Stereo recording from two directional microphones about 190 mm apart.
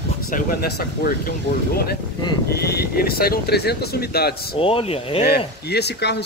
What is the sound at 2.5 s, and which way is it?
Speech, 55° left (ahead or behind).